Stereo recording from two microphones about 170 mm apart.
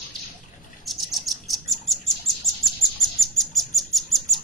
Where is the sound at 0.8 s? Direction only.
Centre (ahead or behind).